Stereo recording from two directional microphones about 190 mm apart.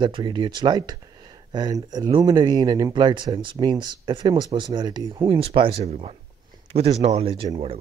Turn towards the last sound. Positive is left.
turn(degrees=-30)  # may be behind; listen again after turning